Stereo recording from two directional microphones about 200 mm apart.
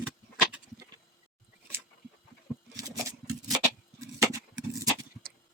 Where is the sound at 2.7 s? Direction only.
20° right (ahead or behind).